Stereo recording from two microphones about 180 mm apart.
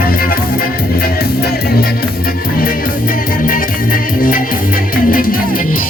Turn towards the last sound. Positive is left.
turn(degrees=50)  # may be behind; listen again after turning